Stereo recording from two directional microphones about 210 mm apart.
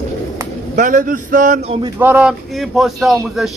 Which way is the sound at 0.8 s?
40° right (ahead or behind).